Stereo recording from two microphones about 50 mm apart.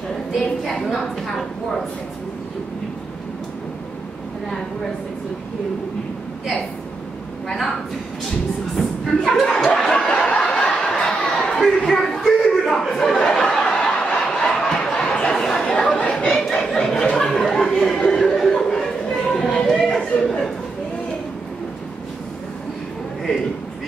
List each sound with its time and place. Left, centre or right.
0.4 s a woman's voice: centre
8.7 s speech: centre
9.5 s a sound: centre
12.6 s chatter: centre
13.3 s snicker: centre
15.3 s a sound: centre